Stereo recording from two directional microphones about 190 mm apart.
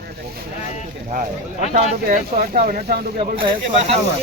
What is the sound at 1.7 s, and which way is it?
Speech, 45° right (ahead or behind).